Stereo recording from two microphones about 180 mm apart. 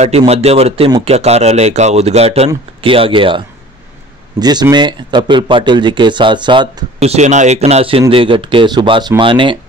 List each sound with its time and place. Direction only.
0.3 s speech: 35° right (ahead or behind)
7.0 s speech: 40° right (ahead or behind)